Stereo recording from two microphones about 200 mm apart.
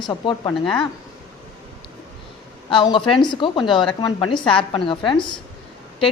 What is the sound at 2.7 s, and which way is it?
A woman's voice, 25° left (ahead or behind).